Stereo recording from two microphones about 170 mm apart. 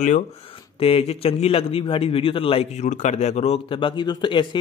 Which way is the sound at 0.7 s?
35° left (ahead or behind).